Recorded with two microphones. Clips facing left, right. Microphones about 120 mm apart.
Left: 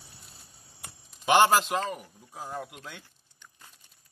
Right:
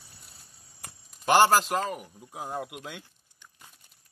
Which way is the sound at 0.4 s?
Centre (ahead or behind).